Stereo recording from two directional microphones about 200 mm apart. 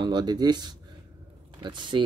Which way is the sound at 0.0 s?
20° right (ahead or behind).